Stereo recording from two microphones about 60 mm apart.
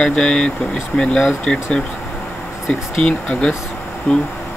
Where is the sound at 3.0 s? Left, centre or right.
Centre.